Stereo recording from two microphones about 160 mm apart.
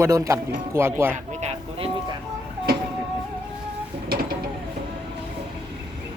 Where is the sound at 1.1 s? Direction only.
45° right (ahead or behind).